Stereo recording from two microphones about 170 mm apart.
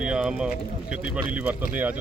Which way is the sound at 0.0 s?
5° right (ahead or behind).